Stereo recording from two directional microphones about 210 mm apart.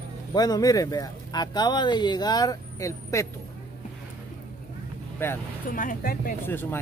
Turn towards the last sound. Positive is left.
turn(degrees=10)  # may be behind; listen again after turning